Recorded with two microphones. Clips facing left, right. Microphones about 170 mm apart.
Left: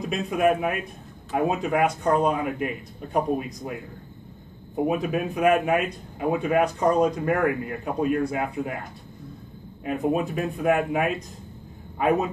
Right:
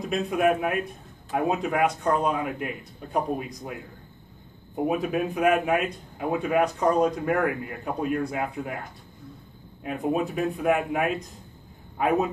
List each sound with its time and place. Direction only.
0.1 s a man's voice: centre (ahead or behind)
4.8 s a man's voice: centre (ahead or behind)
9.8 s a man's voice: centre (ahead or behind)